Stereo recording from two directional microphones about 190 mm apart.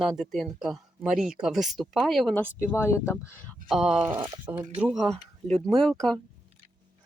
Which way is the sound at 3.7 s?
5° right (ahead or behind).